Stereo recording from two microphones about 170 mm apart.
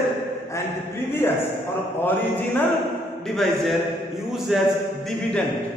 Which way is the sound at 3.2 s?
Centre (ahead or behind).